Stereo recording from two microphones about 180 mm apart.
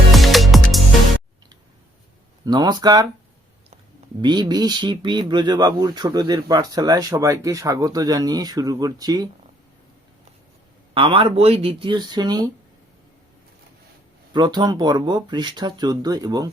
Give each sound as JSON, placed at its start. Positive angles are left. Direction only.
{"t": 0.1, "sound": "music", "side_deg": 0}
{"t": 2.4, "sound": "speech", "side_deg": -25}
{"t": 4.2, "sound": "speech", "side_deg": -25}
{"t": 10.9, "sound": "speech", "side_deg": -30}
{"t": 14.3, "sound": "speech", "side_deg": -25}